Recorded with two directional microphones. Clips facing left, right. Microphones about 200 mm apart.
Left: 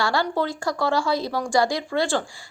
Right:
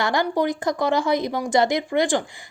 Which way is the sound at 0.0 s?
15° right (ahead or behind).